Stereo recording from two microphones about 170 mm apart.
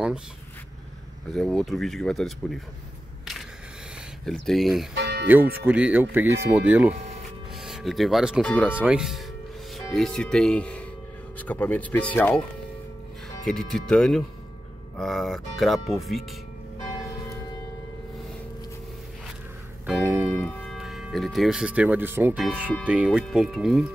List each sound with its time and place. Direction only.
1.3 s speech: centre (ahead or behind)
4.3 s speech: centre (ahead or behind)
4.9 s music: 80° right
5.3 s speech: 10° right (ahead or behind); by 12.4 s 10° left (ahead or behind)
13.5 s speech: 5° left (ahead or behind)
20.0 s organ: 15° right (ahead or behind)
20.4 s speech: centre (ahead or behind)